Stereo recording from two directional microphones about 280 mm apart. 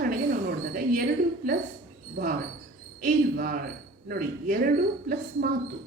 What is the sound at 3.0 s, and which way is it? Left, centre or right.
A woman's voice, right.